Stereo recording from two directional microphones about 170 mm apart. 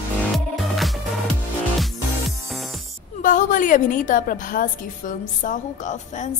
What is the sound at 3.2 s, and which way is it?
A woman's voice, 50° left (ahead or behind).